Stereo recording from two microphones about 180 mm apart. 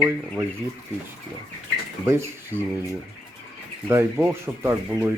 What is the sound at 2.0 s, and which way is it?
Speech, 15° right (ahead or behind).